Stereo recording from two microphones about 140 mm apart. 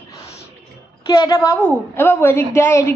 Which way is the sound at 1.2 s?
25° left (ahead or behind).